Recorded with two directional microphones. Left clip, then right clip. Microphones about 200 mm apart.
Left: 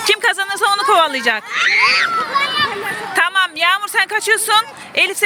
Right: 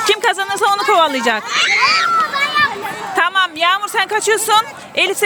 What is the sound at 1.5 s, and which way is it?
Speech, 45° right (ahead or behind).